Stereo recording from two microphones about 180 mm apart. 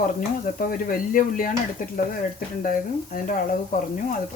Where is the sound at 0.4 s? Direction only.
50° left (ahead or behind).